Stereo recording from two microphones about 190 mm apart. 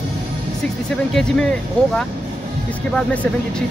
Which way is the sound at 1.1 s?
5° left (ahead or behind).